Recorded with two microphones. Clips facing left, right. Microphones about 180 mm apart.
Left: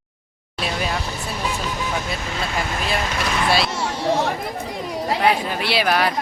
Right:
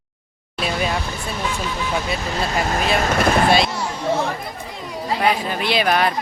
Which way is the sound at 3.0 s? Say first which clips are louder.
Right 7 dB; 50° right (ahead or behind).